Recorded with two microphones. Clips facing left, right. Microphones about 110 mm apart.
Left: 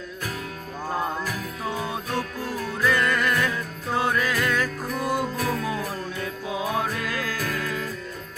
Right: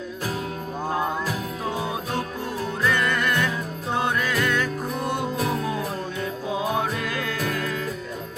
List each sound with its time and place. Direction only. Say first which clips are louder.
0.9 s music: right 2 dB; 5° right (ahead or behind)
2.8 s music: left 1 dB; centre (ahead or behind)
5.4 s music: right 1 dB; 25° right (ahead or behind)
6.7 s music: right 1 dB; centre (ahead or behind)